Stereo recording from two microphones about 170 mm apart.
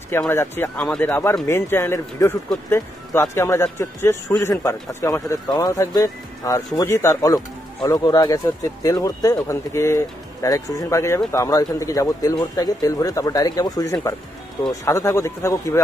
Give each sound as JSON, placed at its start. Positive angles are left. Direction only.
{"t": 0.1, "sound": "speech", "side_deg": 15}